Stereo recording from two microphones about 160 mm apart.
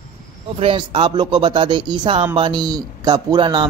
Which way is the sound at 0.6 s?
35° right (ahead or behind).